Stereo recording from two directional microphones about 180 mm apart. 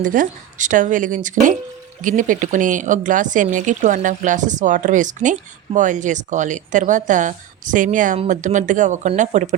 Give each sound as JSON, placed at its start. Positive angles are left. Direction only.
{"t": 0.0, "sound": "speech", "side_deg": -50}